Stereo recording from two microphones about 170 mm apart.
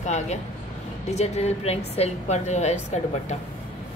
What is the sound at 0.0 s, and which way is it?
A woman's voice, 45° left (ahead or behind).